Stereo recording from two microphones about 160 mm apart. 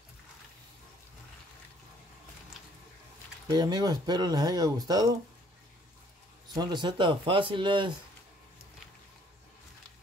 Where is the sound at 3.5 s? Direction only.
25° right (ahead or behind).